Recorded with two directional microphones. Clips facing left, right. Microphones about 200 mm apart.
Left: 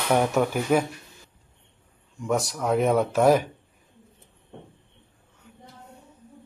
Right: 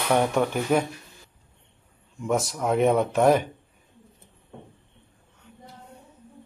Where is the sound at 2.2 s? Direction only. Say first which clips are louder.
Even; centre (ahead or behind).